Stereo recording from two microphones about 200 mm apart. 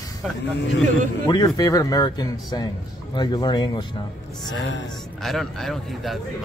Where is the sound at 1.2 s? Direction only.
20° left (ahead or behind).